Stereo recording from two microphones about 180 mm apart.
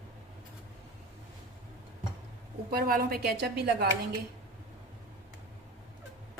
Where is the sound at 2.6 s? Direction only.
55° right (ahead or behind).